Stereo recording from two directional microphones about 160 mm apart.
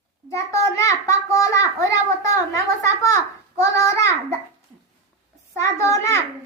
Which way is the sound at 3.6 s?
20° left (ahead or behind).